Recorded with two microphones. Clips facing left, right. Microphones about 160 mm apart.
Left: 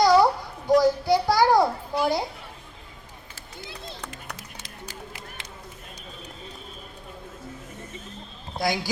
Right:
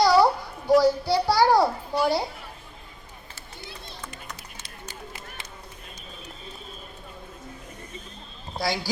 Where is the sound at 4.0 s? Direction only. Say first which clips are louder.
Left 1 dB; 80° left.